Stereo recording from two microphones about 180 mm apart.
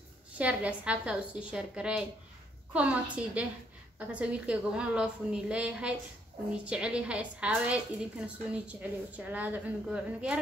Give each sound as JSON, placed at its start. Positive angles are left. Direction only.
{"t": 0.4, "sound": "a woman's voice", "side_deg": -5}